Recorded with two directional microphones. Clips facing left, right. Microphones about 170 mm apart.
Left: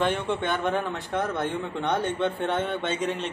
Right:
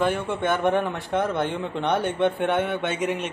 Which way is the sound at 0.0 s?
10° right (ahead or behind).